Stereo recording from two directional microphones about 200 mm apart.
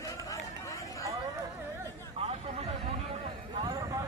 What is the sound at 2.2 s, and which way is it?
Hubbub, 30° right (ahead or behind).